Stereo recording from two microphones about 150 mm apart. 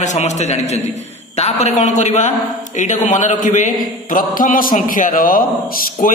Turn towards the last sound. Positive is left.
turn(degrees=55)  # may be behind; listen again after turning